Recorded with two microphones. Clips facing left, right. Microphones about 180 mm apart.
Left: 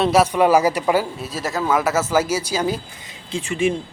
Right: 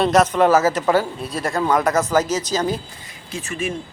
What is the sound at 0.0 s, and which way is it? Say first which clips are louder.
Speech: even; 5° left (ahead or behind).